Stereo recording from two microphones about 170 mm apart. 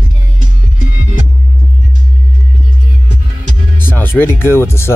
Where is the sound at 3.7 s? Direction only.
10° left (ahead or behind).